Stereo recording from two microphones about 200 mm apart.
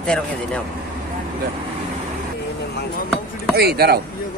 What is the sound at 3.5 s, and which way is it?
Speech, 50° right (ahead or behind).